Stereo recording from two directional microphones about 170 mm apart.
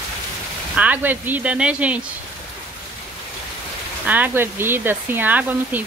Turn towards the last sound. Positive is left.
turn(degrees=-10)  # may be behind; listen again after turning